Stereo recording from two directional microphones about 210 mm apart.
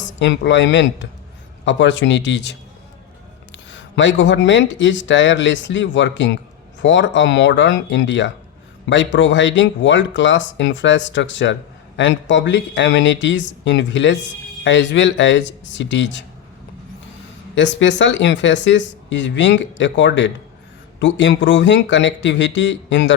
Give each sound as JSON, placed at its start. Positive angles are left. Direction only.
{"t": 0.2, "sound": "speech", "side_deg": 60}
{"t": 17.5, "sound": "speech", "side_deg": 60}